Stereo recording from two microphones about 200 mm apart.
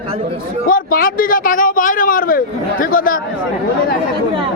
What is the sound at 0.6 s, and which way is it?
Speech, 45° left (ahead or behind).